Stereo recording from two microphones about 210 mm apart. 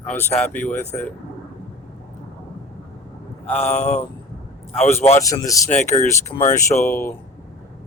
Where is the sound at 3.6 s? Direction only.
30° left (ahead or behind).